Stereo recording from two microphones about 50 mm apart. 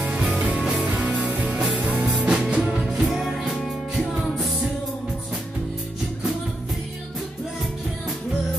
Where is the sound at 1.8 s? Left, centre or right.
Right.